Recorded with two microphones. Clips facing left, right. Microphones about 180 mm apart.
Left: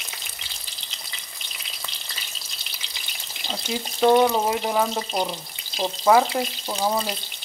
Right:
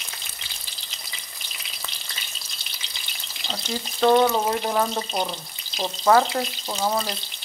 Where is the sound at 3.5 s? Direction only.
5° left (ahead or behind).